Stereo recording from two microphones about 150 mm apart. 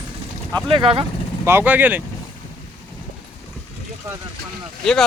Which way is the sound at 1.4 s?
15° right (ahead or behind).